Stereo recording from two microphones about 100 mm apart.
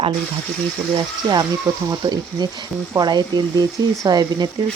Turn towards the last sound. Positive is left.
turn(degrees=-40)  # may be behind; listen again after turning